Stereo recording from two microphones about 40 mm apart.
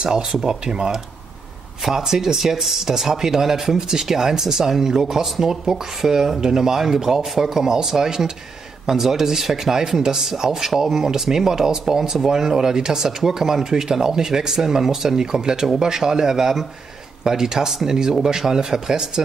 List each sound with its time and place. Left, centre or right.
0.0 s speech: centre